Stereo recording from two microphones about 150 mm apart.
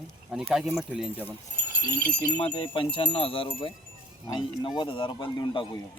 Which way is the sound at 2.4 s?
35° left (ahead or behind).